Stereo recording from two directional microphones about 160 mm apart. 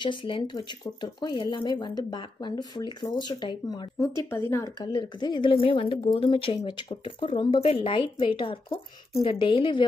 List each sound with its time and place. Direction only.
0.0 s speech: 30° left (ahead or behind)
4.9 s a woman's voice: 30° left (ahead or behind)